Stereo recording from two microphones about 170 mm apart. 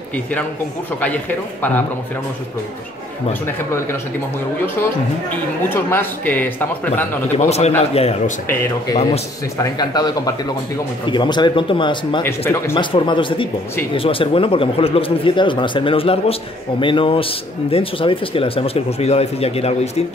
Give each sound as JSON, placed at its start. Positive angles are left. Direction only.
{"t": 1.0, "sound": "a man's voice", "side_deg": 10}
{"t": 5.7, "sound": "a man's voice", "side_deg": 10}
{"t": 7.3, "sound": "a man's voice", "side_deg": 40}
{"t": 9.6, "sound": "speech", "side_deg": 25}
{"t": 12.2, "sound": "a man's voice", "side_deg": 15}
{"t": 12.7, "sound": "a man's voice", "side_deg": 30}